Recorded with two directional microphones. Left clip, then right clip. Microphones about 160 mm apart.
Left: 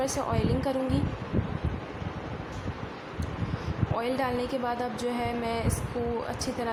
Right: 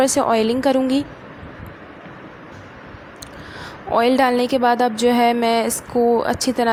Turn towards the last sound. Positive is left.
turn(degrees=-45)  # may be behind; listen again after turning